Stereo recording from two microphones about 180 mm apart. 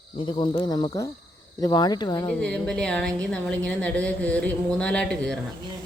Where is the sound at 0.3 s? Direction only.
25° left (ahead or behind).